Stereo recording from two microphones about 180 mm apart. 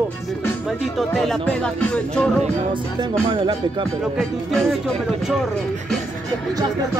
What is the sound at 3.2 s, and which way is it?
Music, 25° right (ahead or behind).